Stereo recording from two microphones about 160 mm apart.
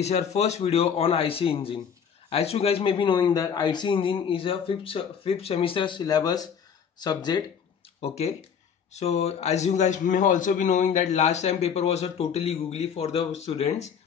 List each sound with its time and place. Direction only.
0.0 s a man's voice: 45° left (ahead or behind); by 7.4 s 25° left (ahead or behind)
8.0 s a man's voice: 40° left (ahead or behind)